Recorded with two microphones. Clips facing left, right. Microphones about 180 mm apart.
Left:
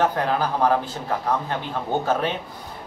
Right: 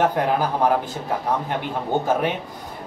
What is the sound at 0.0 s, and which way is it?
Speech, 15° right (ahead or behind).